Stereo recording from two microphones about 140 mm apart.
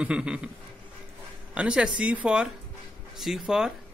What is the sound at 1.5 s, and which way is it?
A child's voice, 5° right (ahead or behind).